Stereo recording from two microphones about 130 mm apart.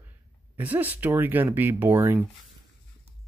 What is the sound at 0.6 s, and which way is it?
Speech, 15° right (ahead or behind).